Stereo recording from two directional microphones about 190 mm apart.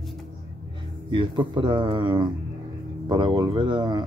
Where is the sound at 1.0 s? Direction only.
25° right (ahead or behind).